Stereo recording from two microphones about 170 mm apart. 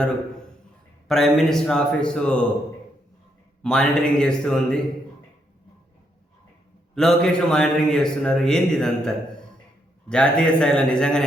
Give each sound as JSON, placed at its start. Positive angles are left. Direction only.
{"t": 1.0, "sound": "a man's voice", "side_deg": 0}
{"t": 3.6, "sound": "a man's voice", "side_deg": 5}
{"t": 6.9, "sound": "a man's voice", "side_deg": 0}